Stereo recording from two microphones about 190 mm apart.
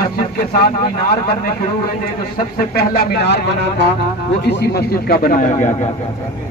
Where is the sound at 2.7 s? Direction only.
60° left (ahead or behind); by 5.9 s 40° left (ahead or behind).